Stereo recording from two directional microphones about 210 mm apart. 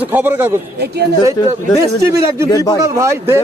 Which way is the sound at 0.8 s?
50° right (ahead or behind).